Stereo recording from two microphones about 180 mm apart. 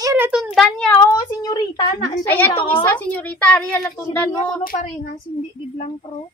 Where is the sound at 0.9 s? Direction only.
20° left (ahead or behind).